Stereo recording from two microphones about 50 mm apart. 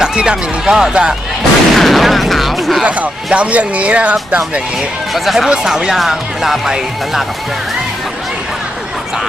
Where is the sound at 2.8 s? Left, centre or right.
Right.